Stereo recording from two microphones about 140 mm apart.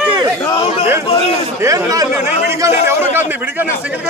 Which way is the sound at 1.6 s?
25° right (ahead or behind).